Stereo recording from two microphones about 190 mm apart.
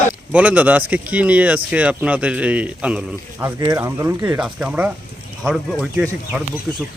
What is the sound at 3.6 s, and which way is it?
Speech, 15° right (ahead or behind).